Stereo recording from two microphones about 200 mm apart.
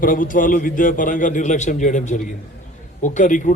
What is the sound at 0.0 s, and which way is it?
A man's voice, 45° left (ahead or behind).